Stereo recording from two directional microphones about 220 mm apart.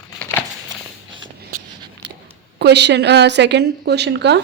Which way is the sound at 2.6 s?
50° right (ahead or behind).